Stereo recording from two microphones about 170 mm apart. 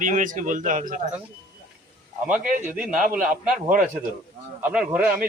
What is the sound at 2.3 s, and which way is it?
Speech, 50° right (ahead or behind).